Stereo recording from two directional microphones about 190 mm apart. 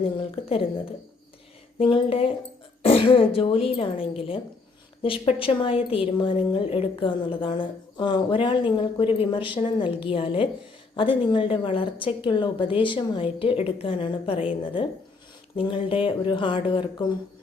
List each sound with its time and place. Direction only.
0.2 s a woman's voice: 30° left (ahead or behind)
1.8 s a woman's voice: 30° left (ahead or behind)